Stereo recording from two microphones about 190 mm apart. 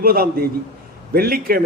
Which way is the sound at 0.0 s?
50° right (ahead or behind).